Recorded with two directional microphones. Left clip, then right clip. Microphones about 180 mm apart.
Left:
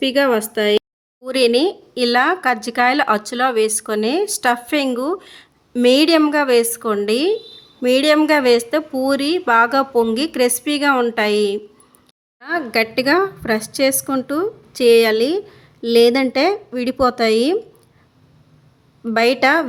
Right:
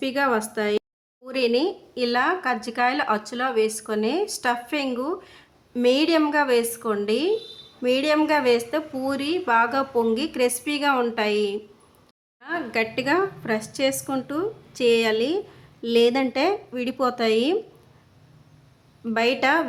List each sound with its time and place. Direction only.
0.0 s a woman's voice: 30° left (ahead or behind)
19.0 s a woman's voice: 30° left (ahead or behind)